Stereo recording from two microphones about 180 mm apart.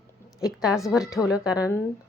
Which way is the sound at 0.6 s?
Centre (ahead or behind).